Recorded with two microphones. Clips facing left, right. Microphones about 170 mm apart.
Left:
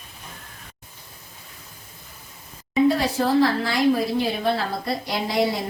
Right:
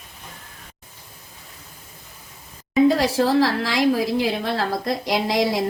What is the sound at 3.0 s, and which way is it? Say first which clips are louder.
A woman's voice: right 1 dB; 90° right.